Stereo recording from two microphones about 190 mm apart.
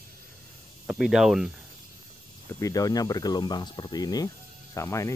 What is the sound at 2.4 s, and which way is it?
Speech, 15° left (ahead or behind).